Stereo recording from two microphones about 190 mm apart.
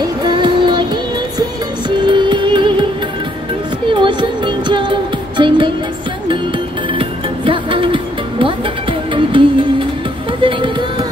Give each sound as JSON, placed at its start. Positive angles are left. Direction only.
{"t": 0.0, "sound": "music", "side_deg": -25}
{"t": 1.9, "sound": "music", "side_deg": -25}
{"t": 3.9, "sound": "music", "side_deg": -25}
{"t": 7.0, "sound": "music", "side_deg": -25}